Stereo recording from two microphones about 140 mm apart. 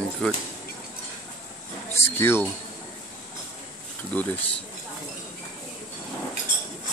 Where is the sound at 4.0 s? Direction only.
10° left (ahead or behind).